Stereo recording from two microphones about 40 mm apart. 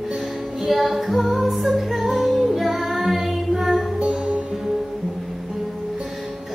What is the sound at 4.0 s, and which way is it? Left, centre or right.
Music, right.